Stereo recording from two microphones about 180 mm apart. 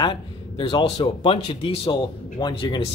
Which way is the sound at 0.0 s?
25° left (ahead or behind).